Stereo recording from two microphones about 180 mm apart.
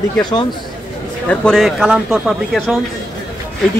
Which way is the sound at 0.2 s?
25° left (ahead or behind).